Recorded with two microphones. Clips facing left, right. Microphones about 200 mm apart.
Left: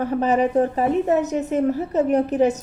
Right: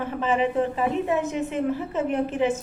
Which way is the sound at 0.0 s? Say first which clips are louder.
Left 5 dB; 40° left (ahead or behind).